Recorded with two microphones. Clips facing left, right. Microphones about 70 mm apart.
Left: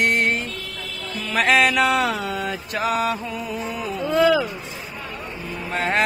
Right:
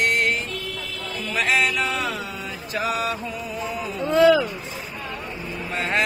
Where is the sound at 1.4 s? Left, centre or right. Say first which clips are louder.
Left 5 dB; left.